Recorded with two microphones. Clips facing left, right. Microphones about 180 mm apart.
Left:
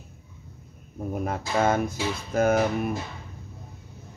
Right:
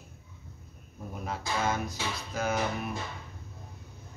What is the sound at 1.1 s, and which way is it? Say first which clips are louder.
Speech: left 7 dB; 55° left (ahead or behind).